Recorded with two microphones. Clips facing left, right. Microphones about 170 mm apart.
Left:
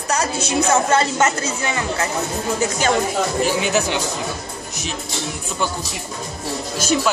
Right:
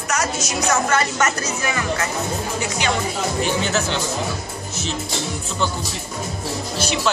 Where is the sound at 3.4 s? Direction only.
10° left (ahead or behind).